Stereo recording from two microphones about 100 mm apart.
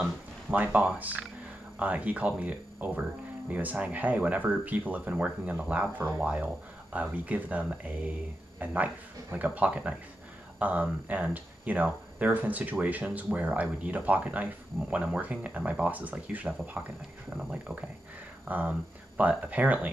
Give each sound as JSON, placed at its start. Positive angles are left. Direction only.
{"t": 0.5, "sound": "speech", "side_deg": -15}